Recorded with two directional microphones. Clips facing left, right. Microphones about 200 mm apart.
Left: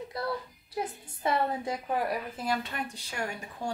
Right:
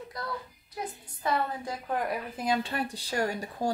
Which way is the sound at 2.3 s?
15° right (ahead or behind).